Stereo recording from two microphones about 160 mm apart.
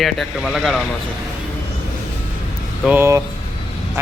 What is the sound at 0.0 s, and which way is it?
Speech, centre (ahead or behind).